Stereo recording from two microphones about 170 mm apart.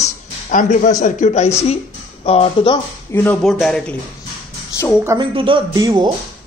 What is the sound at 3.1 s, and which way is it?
Speech, 10° left (ahead or behind).